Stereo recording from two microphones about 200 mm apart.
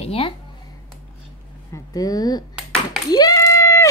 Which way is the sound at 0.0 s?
30° left (ahead or behind).